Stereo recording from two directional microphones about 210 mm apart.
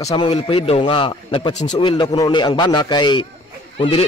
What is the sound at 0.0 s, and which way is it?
A man's voice, 20° left (ahead or behind).